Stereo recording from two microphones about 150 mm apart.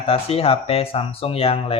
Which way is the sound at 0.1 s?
40° left (ahead or behind).